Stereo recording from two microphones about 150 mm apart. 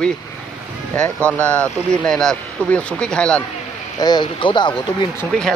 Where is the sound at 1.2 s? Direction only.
10° left (ahead or behind).